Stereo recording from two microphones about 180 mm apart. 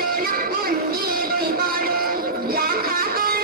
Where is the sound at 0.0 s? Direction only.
55° right (ahead or behind).